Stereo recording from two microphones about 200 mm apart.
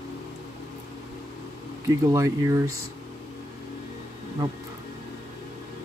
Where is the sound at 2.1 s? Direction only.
15° right (ahead or behind).